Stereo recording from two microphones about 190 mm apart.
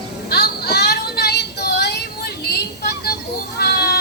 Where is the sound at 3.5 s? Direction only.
60° left (ahead or behind).